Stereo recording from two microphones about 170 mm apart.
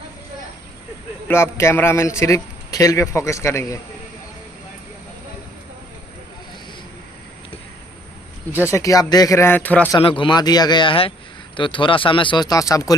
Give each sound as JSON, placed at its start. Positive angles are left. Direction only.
{"t": 1.2, "sound": "a man's voice", "side_deg": 15}
{"t": 8.6, "sound": "a man's voice", "side_deg": 20}
{"t": 9.9, "sound": "speech", "side_deg": 30}